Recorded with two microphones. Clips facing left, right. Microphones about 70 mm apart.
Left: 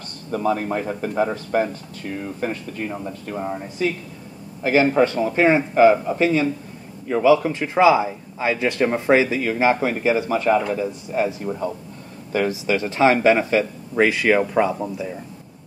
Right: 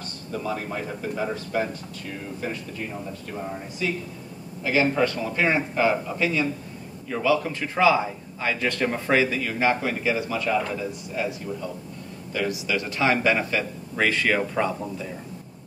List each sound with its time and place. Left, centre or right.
0.3 s speech: left
3.3 s a man's voice: left
12.4 s speech: left; by 15.1 s centre